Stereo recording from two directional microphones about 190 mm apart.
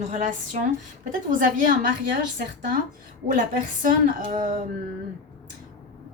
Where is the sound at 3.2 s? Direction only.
40° right (ahead or behind).